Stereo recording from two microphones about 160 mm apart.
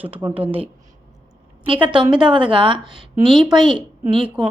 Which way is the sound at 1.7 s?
30° right (ahead or behind).